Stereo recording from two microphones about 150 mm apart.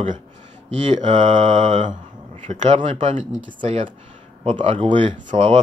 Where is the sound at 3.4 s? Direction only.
35° right (ahead or behind).